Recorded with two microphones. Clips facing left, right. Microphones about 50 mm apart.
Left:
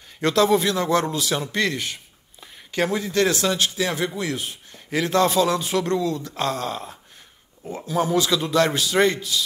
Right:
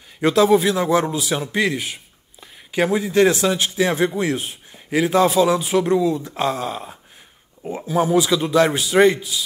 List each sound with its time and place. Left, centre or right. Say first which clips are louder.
0.2 s a man's voice: right 4 dB; centre; by 4.6 s right
4.7 s speech: right 3 dB; centre